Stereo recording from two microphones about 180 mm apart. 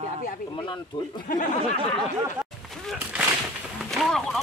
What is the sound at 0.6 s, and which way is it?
Speech, 25° left (ahead or behind).